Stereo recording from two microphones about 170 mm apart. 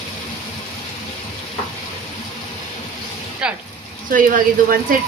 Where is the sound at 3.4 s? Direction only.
5° right (ahead or behind).